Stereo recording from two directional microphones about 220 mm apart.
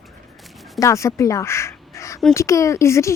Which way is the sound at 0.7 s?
15° left (ahead or behind).